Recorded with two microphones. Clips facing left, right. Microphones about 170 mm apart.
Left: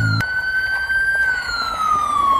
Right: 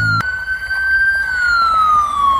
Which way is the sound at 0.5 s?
25° left (ahead or behind).